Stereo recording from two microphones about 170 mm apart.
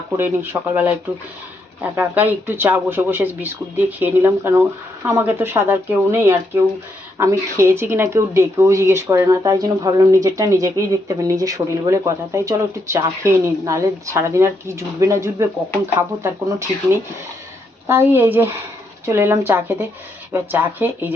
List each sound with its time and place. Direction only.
0.2 s speech: 10° right (ahead or behind)